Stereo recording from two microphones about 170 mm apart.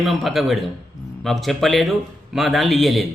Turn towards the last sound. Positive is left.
turn(degrees=0)  # may be behind; listen again after turning